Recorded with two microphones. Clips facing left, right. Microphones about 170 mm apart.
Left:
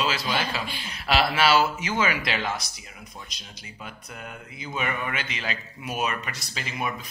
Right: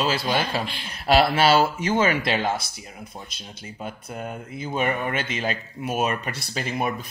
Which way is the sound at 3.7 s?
45° right (ahead or behind).